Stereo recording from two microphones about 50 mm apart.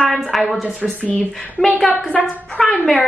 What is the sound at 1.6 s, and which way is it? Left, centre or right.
Speech, centre.